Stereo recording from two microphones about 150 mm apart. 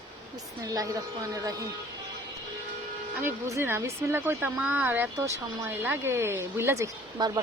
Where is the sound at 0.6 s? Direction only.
20° right (ahead or behind).